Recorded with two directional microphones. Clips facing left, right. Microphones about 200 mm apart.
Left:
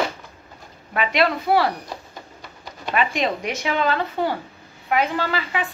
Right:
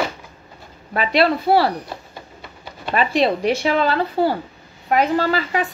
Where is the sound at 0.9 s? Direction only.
35° right (ahead or behind).